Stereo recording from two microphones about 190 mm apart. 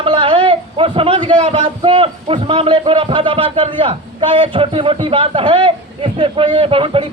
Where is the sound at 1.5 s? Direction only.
30° right (ahead or behind).